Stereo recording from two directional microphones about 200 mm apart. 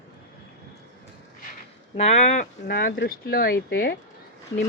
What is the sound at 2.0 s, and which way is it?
Speech, 35° left (ahead or behind).